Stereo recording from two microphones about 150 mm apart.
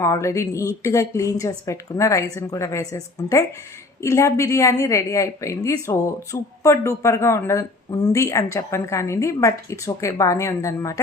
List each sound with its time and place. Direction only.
0.0 s a woman's voice: 20° left (ahead or behind)